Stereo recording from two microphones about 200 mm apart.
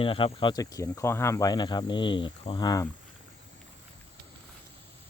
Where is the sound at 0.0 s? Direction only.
25° left (ahead or behind).